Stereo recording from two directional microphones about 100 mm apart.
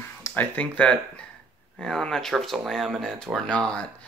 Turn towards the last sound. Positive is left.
turn(degrees=5)  # may be behind; listen again after turning